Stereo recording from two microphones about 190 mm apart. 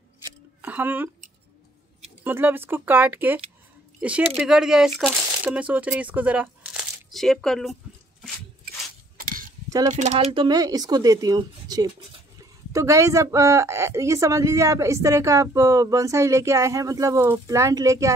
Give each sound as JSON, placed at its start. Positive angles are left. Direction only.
{"t": 0.6, "sound": "speech", "side_deg": -10}
{"t": 2.2, "sound": "a woman's voice", "side_deg": -10}
{"t": 4.4, "sound": "speech", "side_deg": -5}
{"t": 9.2, "sound": "a sound", "side_deg": -45}
{"t": 9.8, "sound": "a woman's voice", "side_deg": -35}